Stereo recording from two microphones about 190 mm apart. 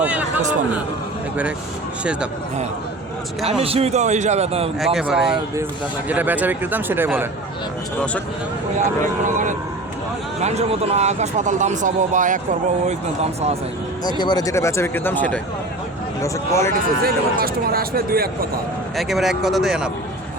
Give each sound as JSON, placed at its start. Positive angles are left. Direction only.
{"t": 0.0, "sound": "a sound", "side_deg": -10}
{"t": 3.6, "sound": "speech", "side_deg": -30}
{"t": 4.9, "sound": "speech", "side_deg": -5}
{"t": 8.8, "sound": "speech", "side_deg": -40}
{"t": 14.0, "sound": "speech", "side_deg": 20}
{"t": 17.0, "sound": "speech", "side_deg": -50}
{"t": 18.9, "sound": "speech", "side_deg": 0}